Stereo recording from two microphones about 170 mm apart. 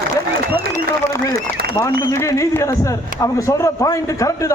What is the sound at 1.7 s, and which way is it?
A man's voice, 20° left (ahead or behind).